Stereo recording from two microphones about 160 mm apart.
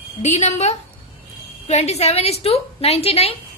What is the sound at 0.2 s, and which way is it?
A woman's voice, 45° left (ahead or behind).